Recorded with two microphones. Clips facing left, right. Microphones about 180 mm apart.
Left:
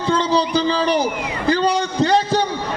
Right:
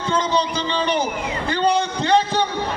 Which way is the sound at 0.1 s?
35° left (ahead or behind).